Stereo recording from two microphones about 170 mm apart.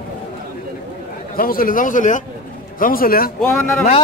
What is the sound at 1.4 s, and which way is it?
A man's voice, 55° left (ahead or behind).